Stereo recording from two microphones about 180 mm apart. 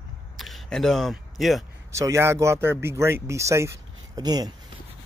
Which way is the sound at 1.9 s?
15° right (ahead or behind).